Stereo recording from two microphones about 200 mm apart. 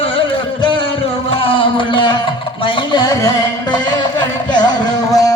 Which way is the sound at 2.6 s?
25° left (ahead or behind).